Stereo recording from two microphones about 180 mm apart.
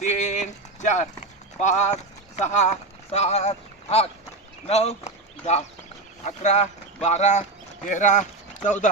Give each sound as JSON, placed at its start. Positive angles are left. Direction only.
{"t": 0.0, "sound": "clip-clop", "side_deg": 40}
{"t": 1.6, "sound": "speech", "side_deg": 40}